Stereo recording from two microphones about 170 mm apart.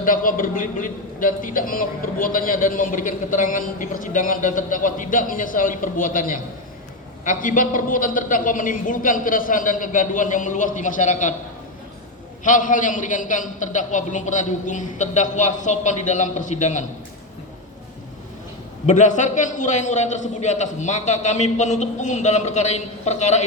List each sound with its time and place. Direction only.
0.0 s a man's voice: 55° left (ahead or behind)
12.5 s a man's voice: 50° left (ahead or behind)
18.9 s a man's voice: 45° left (ahead or behind)